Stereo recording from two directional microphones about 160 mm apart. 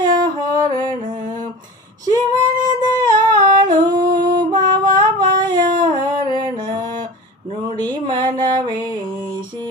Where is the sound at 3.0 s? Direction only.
25° right (ahead or behind).